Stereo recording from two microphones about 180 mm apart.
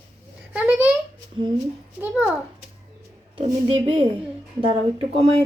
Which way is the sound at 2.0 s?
10° right (ahead or behind).